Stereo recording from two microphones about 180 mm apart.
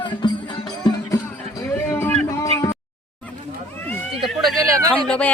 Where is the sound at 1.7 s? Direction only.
15° left (ahead or behind).